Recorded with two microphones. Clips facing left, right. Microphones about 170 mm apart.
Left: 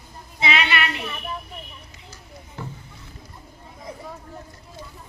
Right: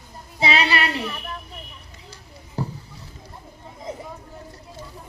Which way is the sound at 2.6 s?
35° right (ahead or behind).